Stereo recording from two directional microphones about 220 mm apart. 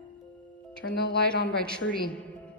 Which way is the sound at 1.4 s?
5° left (ahead or behind).